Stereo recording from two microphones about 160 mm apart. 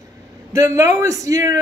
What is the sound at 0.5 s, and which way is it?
Speech, 20° right (ahead or behind).